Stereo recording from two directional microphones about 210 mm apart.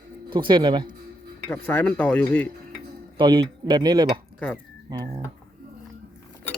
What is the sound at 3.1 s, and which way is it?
Speech, 25° right (ahead or behind).